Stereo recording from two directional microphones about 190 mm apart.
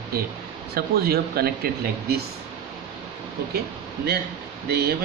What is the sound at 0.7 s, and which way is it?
Speech, 55° right (ahead or behind).